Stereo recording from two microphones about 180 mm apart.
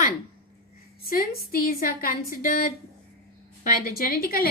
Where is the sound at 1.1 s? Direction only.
55° left (ahead or behind).